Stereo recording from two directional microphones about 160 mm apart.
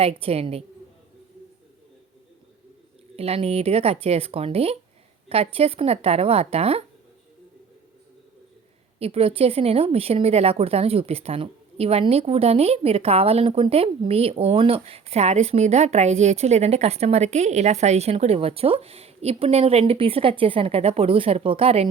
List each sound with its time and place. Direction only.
0.0 s a woman's voice: 40° right (ahead or behind)
3.2 s a woman's voice: 40° right (ahead or behind)
9.0 s a woman's voice: 40° right (ahead or behind)